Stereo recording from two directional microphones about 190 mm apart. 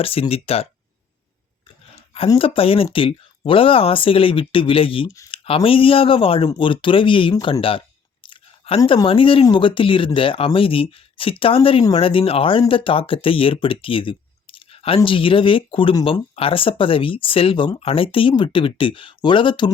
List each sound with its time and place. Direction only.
0.0 s speech: 30° left (ahead or behind)
2.1 s speech: 30° left (ahead or behind)
5.1 s speech: 15° left (ahead or behind)
5.5 s a man's voice: 30° left (ahead or behind)
8.8 s speech: 20° left (ahead or behind)